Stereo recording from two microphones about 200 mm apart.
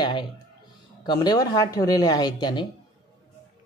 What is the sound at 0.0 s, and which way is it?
Speech, 25° left (ahead or behind).